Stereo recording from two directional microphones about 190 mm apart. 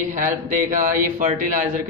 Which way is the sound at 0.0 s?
45° right (ahead or behind).